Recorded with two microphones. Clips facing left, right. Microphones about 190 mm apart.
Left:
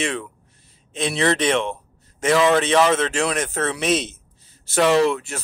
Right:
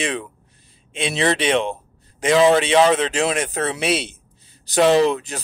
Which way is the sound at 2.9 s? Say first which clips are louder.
Right 2 dB; 15° right (ahead or behind).